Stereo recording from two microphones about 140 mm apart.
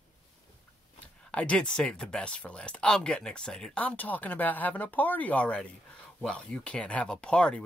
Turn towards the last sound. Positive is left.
turn(degrees=5)  # may be behind; listen again after turning